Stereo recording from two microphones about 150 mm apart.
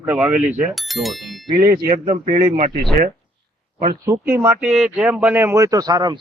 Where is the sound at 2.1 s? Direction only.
60° right (ahead or behind).